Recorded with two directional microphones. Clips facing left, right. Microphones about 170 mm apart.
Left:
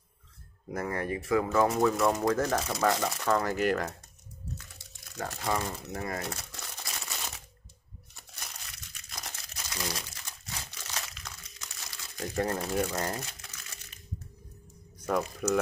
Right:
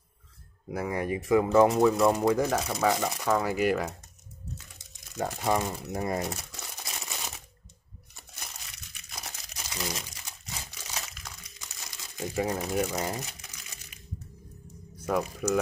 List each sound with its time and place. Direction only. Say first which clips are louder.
0.7 s speech: right 2 dB; 10° right (ahead or behind)
1.8 s speech: right 3 dB; 5° right (ahead or behind)
4.7 s crumpling: right 8 dB; 20° right (ahead or behind)
9.1 s crumpling: right 1 dB; 10° right (ahead or behind)
15.0 s speech: right 1 dB; 5° right (ahead or behind)